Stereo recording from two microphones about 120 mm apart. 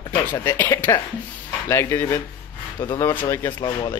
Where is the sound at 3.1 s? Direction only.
20° left (ahead or behind).